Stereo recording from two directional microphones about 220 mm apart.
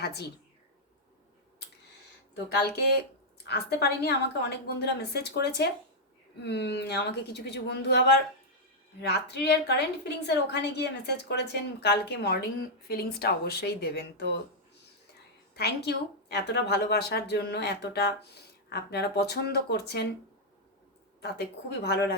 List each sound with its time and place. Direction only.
0.0 s a woman's voice: 50° left (ahead or behind)
3.4 s a woman's voice: 50° left (ahead or behind)
15.5 s a woman's voice: 50° left (ahead or behind)
21.2 s a woman's voice: 50° left (ahead or behind)